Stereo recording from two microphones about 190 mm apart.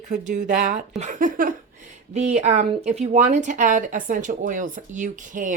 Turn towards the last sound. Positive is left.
turn(degrees=-45)  # may be behind; listen again after turning